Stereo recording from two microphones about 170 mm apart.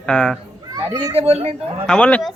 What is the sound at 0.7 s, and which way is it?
Speech, 25° right (ahead or behind).